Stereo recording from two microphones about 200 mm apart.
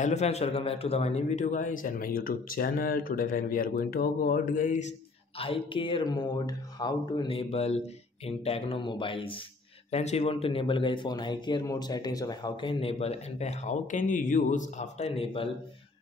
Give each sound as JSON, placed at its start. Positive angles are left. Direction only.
{"t": 0.0, "sound": "a man's voice", "side_deg": 35}
{"t": 5.4, "sound": "speech", "side_deg": 25}